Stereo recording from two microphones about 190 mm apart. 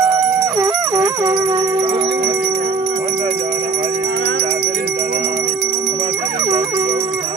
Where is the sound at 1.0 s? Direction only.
20° right (ahead or behind).